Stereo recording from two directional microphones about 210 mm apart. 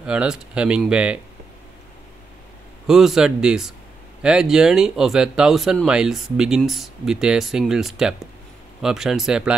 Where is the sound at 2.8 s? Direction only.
Centre (ahead or behind).